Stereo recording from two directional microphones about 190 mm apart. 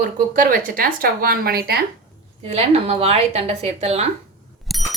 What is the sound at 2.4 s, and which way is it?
A woman's voice, 35° right (ahead or behind).